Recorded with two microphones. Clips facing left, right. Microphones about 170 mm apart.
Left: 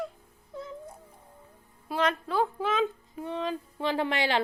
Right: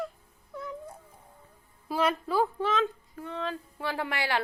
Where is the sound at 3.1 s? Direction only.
20° left (ahead or behind).